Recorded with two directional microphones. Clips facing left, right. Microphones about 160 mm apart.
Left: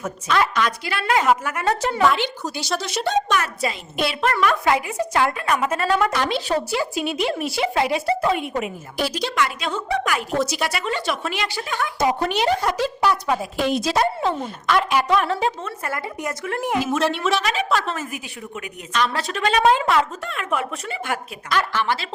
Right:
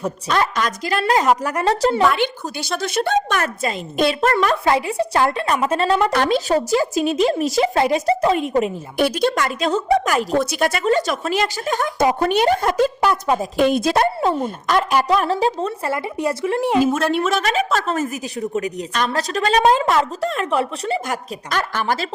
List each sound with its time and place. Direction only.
0.0 s a woman's voice: 40° right (ahead or behind)
2.1 s a woman's voice: 55° right (ahead or behind); by 6.1 s 30° right (ahead or behind)
6.1 s a woman's voice: 45° right (ahead or behind)
9.0 s speech: 55° right (ahead or behind); by 10.2 s 40° right (ahead or behind)
10.4 s speech: 50° right (ahead or behind); by 16.8 s 25° right (ahead or behind)
16.8 s a woman's voice: 45° right (ahead or behind)